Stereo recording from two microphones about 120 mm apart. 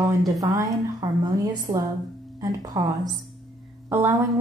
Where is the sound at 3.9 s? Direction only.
20° right (ahead or behind).